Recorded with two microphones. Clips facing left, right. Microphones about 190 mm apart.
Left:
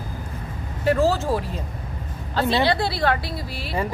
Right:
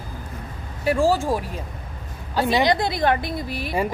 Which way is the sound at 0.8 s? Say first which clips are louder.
Even; 10° right (ahead or behind).